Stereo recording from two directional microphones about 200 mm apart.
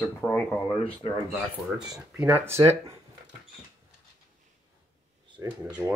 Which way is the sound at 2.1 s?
10° right (ahead or behind).